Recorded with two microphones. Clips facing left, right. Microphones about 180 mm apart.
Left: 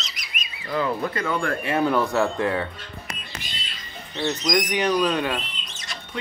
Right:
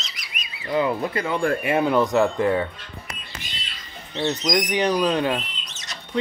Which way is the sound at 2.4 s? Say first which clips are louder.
Right 3 dB; 5° right (ahead or behind).